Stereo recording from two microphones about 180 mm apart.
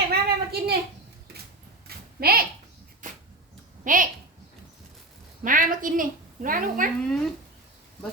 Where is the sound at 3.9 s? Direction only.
45° right (ahead or behind).